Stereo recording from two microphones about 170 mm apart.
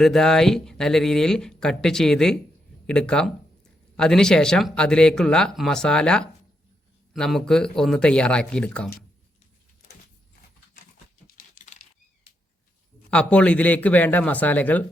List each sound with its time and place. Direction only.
0.0 s speech: centre (ahead or behind)
11.3 s a sound: 45° left (ahead or behind)
13.1 s a man's voice: 5° left (ahead or behind)